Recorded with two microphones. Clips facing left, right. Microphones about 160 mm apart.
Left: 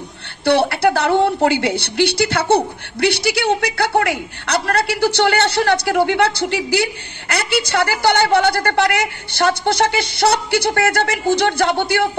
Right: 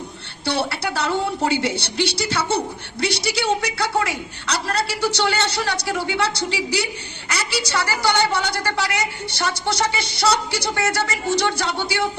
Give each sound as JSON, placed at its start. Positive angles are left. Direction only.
{"t": 0.5, "sound": "a woman's voice", "side_deg": 60}